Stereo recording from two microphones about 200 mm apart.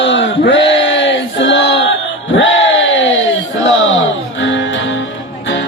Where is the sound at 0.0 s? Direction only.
65° left (ahead or behind).